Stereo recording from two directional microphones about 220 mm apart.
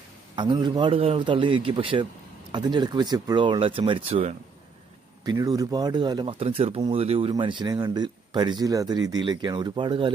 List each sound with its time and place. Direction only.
0.4 s speech: 20° right (ahead or behind)
5.2 s speech: 15° right (ahead or behind)